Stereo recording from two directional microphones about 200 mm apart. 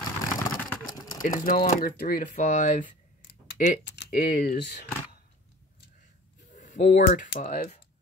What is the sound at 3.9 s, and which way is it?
Speech, 55° left (ahead or behind).